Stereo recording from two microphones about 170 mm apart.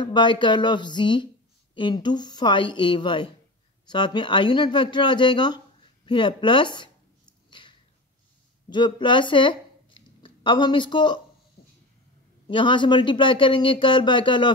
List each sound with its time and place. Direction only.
0.0 s speech: 30° left (ahead or behind)
8.6 s speech: 25° left (ahead or behind)
12.4 s speech: 30° left (ahead or behind)